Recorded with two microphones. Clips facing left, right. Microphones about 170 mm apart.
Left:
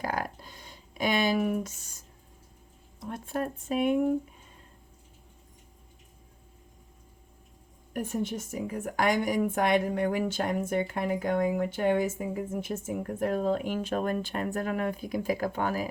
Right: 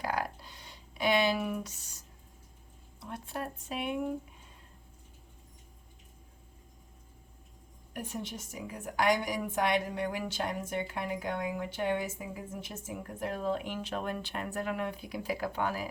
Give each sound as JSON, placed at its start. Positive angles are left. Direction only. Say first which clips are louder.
{"t": 0.0, "sound": "a sound", "louder": "left 2 dB", "side_deg": 50}
{"t": 3.0, "sound": "a woman's voice", "louder": "left 6 dB", "side_deg": 50}
{"t": 7.9, "sound": "a woman's voice", "louder": "left 8 dB", "side_deg": 50}